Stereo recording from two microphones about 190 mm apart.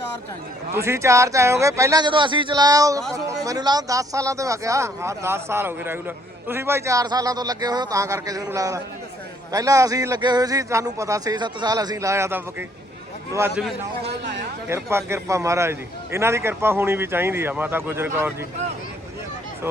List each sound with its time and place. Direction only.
0.7 s speech: 15° right (ahead or behind)
14.0 s speech: 65° right (ahead or behind)
14.7 s speech: 15° right (ahead or behind)